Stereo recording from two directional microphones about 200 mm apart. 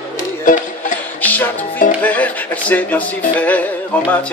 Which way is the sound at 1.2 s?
10° left (ahead or behind).